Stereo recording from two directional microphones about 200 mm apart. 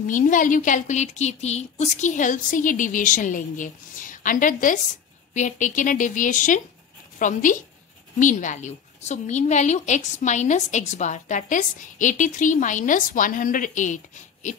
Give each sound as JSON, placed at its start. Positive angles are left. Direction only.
{"t": 0.0, "sound": "a woman's voice", "side_deg": 40}